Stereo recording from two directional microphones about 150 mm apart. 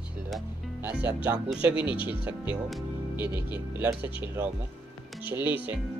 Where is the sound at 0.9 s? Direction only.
10° right (ahead or behind).